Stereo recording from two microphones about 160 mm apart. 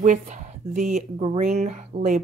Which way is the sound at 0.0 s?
50° right (ahead or behind).